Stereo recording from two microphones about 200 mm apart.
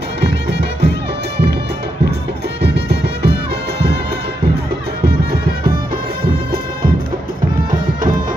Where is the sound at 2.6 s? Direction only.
55° right (ahead or behind).